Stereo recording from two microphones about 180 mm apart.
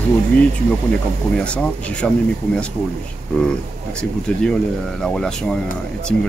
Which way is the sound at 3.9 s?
5° left (ahead or behind).